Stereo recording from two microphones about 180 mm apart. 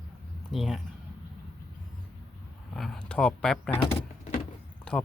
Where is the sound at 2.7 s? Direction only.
Centre (ahead or behind).